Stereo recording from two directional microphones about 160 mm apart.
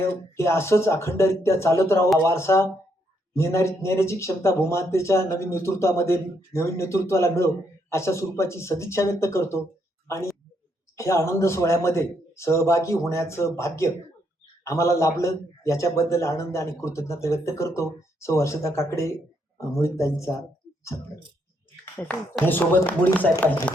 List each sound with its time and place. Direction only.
0.0 s speech: 15° left (ahead or behind)
10.9 s a man's voice: 20° left (ahead or behind)
22.0 s speech: 10° left (ahead or behind)